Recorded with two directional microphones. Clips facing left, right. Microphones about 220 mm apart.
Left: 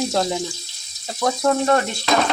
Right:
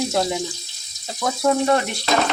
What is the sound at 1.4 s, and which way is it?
Speech, 10° right (ahead or behind).